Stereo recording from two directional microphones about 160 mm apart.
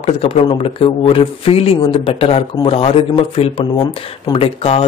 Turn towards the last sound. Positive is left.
turn(degrees=35)  # may be behind; listen again after turning